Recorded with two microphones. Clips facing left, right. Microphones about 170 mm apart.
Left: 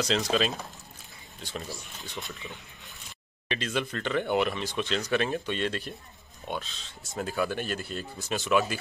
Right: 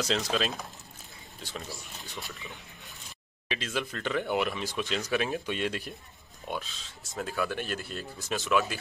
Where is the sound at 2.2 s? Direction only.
20° left (ahead or behind).